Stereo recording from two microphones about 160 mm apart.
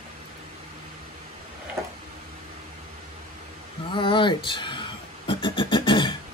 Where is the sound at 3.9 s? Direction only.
30° left (ahead or behind).